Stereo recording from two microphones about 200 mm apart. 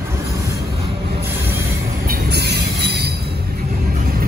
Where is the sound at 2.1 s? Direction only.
55° right (ahead or behind).